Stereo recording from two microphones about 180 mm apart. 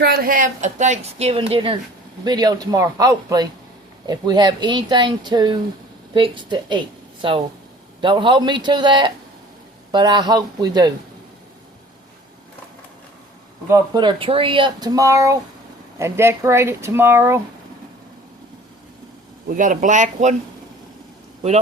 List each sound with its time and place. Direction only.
0.0 s a woman's voice: 55° right (ahead or behind); by 10.9 s 20° right (ahead or behind)
13.7 s speech: 25° right (ahead or behind)
19.5 s speech: 50° right (ahead or behind)